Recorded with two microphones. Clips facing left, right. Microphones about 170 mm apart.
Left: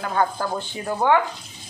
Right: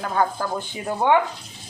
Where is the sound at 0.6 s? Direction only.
20° right (ahead or behind).